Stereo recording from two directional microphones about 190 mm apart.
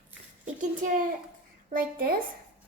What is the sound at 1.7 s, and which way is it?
Speech, 50° right (ahead or behind).